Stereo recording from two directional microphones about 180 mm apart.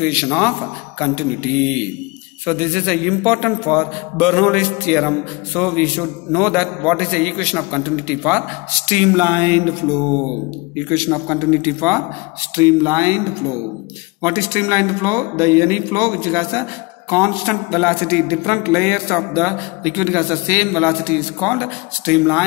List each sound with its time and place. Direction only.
0.0 s a man's voice: 5° right (ahead or behind)
11.1 s a man's voice: 5° left (ahead or behind)
12.5 s speech: 15° right (ahead or behind)
14.2 s speech: 15° right (ahead or behind)
17.6 s a man's voice: 5° left (ahead or behind)